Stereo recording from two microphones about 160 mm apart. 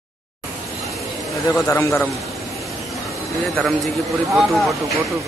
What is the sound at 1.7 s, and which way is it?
Speech, 15° left (ahead or behind).